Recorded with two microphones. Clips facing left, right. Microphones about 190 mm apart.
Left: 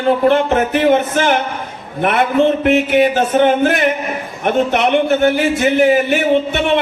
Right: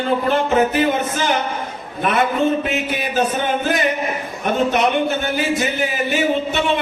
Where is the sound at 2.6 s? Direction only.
65° left (ahead or behind).